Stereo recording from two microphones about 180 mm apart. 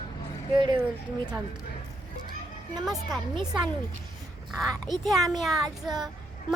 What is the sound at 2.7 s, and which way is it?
Speech, 20° right (ahead or behind).